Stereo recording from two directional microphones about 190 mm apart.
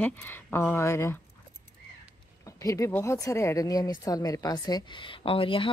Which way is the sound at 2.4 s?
15° left (ahead or behind).